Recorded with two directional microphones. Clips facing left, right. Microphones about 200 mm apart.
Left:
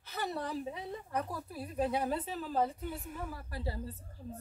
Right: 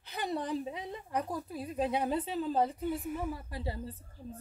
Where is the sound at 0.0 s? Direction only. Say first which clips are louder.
Right 2 dB; 15° right (ahead or behind).